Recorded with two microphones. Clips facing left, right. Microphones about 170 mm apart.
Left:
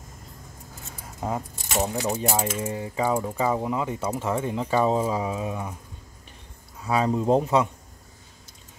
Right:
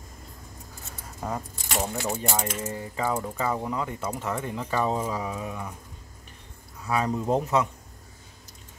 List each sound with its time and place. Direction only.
1.2 s speech: 20° left (ahead or behind)
6.9 s speech: 25° left (ahead or behind)